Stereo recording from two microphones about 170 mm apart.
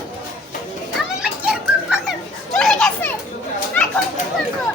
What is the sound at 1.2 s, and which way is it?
Children playing, 5° right (ahead or behind).